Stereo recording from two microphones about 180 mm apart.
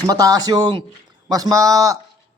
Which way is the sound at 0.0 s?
20° right (ahead or behind).